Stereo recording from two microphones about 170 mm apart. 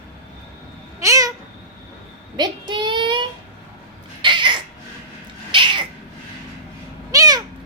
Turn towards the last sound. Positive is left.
turn(degrees=-20)  # may be behind; listen again after turning